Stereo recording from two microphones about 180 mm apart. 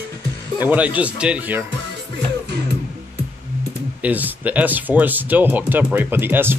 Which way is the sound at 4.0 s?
10° right (ahead or behind).